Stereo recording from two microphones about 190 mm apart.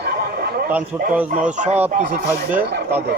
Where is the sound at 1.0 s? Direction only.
45° right (ahead or behind).